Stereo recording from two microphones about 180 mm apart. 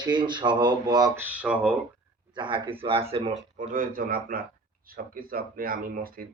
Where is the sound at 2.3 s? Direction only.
25° right (ahead or behind).